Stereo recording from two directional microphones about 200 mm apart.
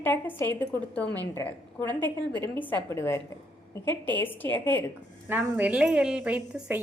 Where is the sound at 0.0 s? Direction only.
10° left (ahead or behind).